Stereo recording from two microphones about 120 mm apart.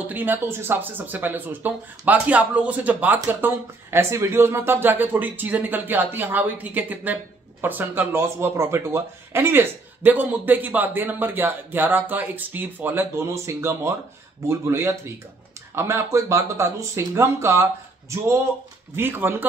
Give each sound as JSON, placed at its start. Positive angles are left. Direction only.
{"t": 0.0, "sound": "speech", "side_deg": -15}